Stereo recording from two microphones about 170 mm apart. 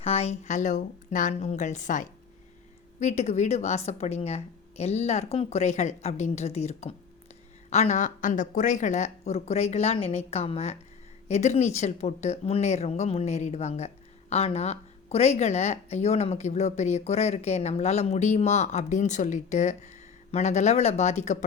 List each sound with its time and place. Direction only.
0.0 s a woman's voice: 40° left (ahead or behind)